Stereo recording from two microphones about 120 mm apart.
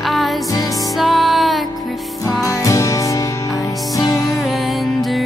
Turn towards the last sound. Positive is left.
turn(degrees=0)  # may be behind; listen again after turning